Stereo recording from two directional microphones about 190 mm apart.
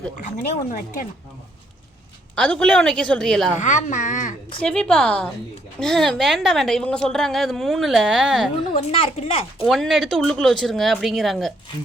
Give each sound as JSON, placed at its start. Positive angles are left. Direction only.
{"t": 0.3, "sound": "speech", "side_deg": 45}
{"t": 2.3, "sound": "a woman's voice", "side_deg": 5}
{"t": 3.6, "sound": "a woman's voice", "side_deg": 40}
{"t": 4.6, "sound": "a woman's voice", "side_deg": 5}
{"t": 8.8, "sound": "a woman's voice", "side_deg": 30}
{"t": 9.6, "sound": "a woman's voice", "side_deg": 0}